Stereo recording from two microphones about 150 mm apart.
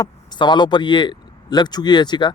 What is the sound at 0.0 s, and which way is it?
Speech, 30° left (ahead or behind).